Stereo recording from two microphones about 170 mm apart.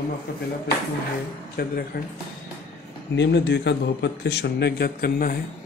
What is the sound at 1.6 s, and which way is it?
Speech, 60° left (ahead or behind).